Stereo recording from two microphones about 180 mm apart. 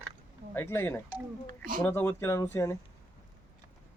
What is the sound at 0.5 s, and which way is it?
Speech, 15° left (ahead or behind).